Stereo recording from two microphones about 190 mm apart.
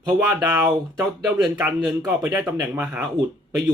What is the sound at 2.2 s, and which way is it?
Speech, 10° right (ahead or behind).